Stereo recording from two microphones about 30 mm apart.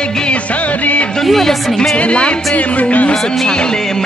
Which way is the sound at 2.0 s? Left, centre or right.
Left.